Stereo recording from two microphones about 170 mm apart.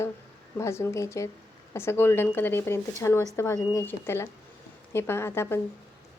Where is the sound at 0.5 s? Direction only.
15° left (ahead or behind).